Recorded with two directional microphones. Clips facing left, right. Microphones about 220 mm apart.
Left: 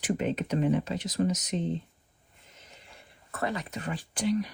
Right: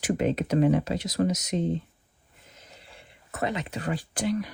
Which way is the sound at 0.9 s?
40° right (ahead or behind).